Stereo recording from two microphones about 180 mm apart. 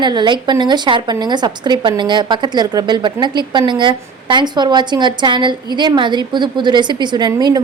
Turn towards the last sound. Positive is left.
turn(degrees=-20)  # may be behind; listen again after turning